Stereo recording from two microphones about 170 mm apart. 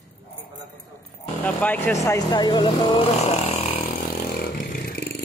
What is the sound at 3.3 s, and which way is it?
Vehicle, 35° left (ahead or behind).